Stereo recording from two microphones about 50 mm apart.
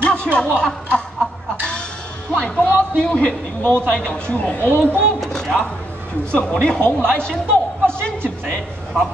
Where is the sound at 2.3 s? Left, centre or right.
Left.